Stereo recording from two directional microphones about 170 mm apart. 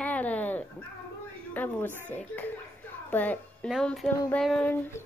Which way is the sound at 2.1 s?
10° left (ahead or behind).